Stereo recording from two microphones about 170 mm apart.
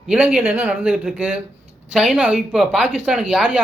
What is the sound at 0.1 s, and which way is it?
Speech, 10° right (ahead or behind).